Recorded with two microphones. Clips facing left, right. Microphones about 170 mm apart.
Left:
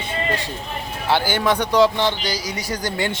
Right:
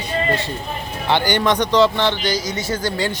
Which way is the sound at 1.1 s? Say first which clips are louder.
Right 2 dB; 5° left (ahead or behind).